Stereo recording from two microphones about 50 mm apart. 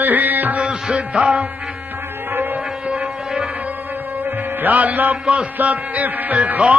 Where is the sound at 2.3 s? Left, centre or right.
Right.